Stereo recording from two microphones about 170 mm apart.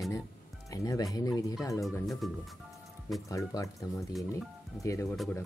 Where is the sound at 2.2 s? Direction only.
Centre (ahead or behind).